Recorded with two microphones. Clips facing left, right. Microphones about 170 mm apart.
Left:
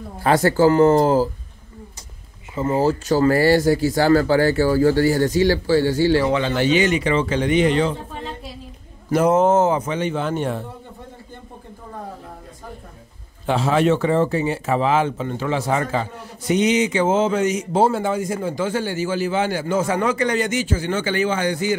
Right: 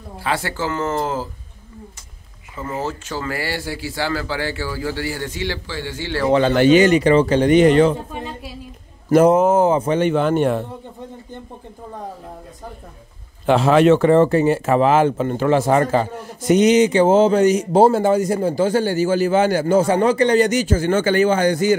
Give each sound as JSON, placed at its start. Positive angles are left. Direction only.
{"t": 0.2, "sound": "speech", "side_deg": 45}
{"t": 2.5, "sound": "speech", "side_deg": 30}
{"t": 6.5, "sound": "a man's voice", "side_deg": -50}
{"t": 9.5, "sound": "speech", "side_deg": -15}
{"t": 9.8, "sound": "speech", "side_deg": -60}
{"t": 13.5, "sound": "a man's voice", "side_deg": -75}
{"t": 13.9, "sound": "speech", "side_deg": -65}
{"t": 14.4, "sound": "a man's voice", "side_deg": -50}